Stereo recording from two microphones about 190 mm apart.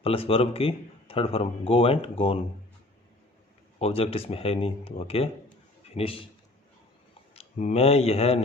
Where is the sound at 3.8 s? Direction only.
30° left (ahead or behind).